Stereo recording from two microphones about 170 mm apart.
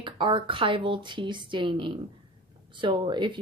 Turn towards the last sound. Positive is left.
turn(degrees=-30)  # may be behind; listen again after turning